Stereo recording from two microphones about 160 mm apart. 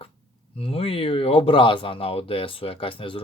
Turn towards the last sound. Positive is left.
turn(degrees=35)  # may be behind; listen again after turning